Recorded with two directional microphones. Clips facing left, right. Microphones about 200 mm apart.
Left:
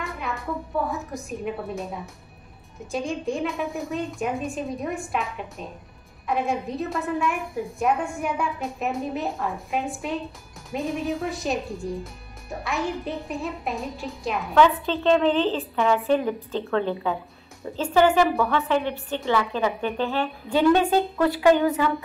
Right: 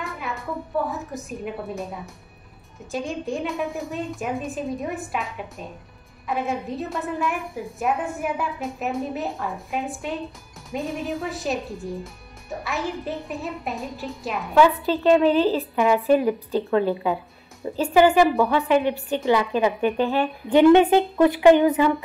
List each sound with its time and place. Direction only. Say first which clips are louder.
0.0 s music: even; centre (ahead or behind)
0.8 s a woman's voice: even; centre (ahead or behind); by 21.9 s 20° right (ahead or behind)